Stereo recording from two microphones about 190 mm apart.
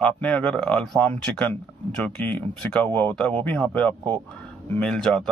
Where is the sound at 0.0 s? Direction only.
5° left (ahead or behind).